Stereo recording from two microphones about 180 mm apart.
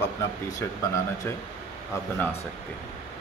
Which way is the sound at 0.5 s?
20° left (ahead or behind).